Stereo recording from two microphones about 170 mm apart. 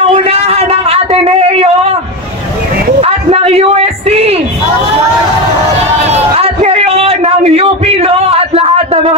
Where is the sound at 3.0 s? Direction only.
35° right (ahead or behind).